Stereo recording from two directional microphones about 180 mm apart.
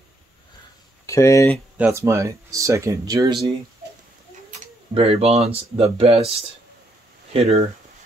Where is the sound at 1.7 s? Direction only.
10° right (ahead or behind).